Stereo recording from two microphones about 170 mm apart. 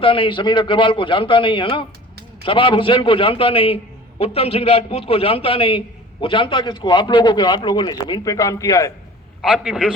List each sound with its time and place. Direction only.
0.0 s a man's voice: 30° left (ahead or behind)
9.4 s a man's voice: 5° right (ahead or behind)